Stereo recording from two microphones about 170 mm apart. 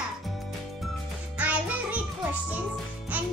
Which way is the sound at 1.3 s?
10° right (ahead or behind).